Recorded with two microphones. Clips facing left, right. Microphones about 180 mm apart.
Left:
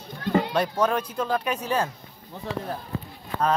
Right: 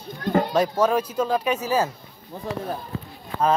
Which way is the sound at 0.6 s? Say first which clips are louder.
Right 3 dB; 10° right (ahead or behind).